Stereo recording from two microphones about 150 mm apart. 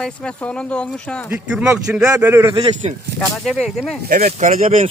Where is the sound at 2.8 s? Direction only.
45° right (ahead or behind).